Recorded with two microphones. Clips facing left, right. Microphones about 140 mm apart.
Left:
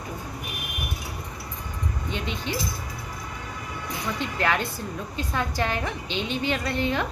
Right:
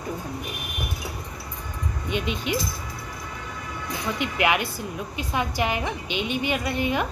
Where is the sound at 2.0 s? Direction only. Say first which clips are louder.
Right 5 dB; 15° right (ahead or behind).